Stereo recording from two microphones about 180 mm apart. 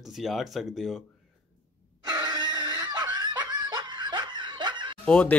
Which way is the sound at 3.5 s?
25° right (ahead or behind).